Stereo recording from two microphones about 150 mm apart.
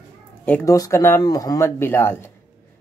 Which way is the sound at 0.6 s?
20° left (ahead or behind).